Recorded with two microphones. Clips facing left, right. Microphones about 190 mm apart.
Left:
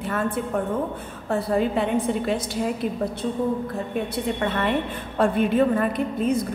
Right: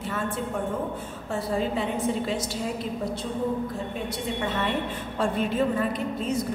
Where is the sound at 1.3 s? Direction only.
60° left (ahead or behind).